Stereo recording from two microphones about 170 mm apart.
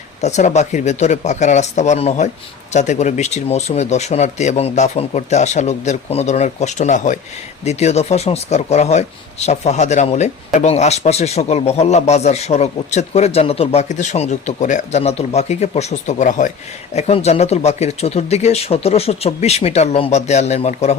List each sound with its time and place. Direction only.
0.2 s speech: 40° left (ahead or behind)